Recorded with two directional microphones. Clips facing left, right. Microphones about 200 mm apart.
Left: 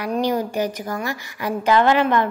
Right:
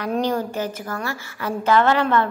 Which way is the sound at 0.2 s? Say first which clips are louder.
Left 2 dB; 15° left (ahead or behind).